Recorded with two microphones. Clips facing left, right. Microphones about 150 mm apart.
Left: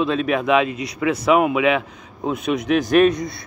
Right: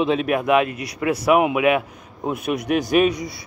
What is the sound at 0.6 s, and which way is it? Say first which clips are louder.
Speech: left 3 dB; 60° right (ahead or behind).